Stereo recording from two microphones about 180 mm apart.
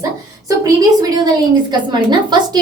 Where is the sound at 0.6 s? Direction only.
20° right (ahead or behind).